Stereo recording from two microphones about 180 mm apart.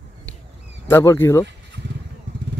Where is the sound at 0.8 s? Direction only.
15° left (ahead or behind).